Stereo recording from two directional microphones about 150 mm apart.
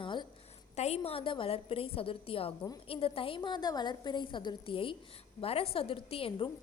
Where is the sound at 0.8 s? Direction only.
45° left (ahead or behind).